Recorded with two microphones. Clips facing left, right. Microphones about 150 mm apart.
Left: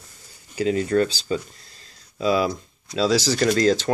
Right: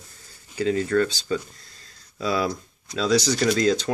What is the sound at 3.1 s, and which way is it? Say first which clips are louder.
Speech: right 2 dB; centre (ahead or behind).